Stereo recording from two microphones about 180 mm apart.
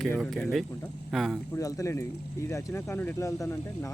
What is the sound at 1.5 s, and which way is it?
Speech, 20° left (ahead or behind).